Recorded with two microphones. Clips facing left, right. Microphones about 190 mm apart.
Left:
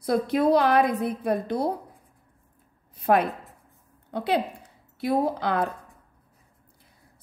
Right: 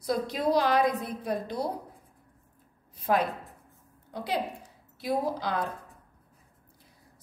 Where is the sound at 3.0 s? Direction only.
55° left (ahead or behind).